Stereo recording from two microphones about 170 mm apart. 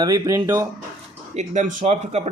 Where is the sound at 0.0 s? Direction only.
20° right (ahead or behind).